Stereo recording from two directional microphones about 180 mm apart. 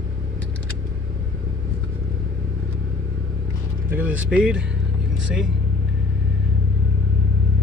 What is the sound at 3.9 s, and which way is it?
Speech, 10° right (ahead or behind).